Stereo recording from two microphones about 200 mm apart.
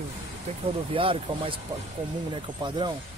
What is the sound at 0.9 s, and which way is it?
A man's voice, 25° right (ahead or behind).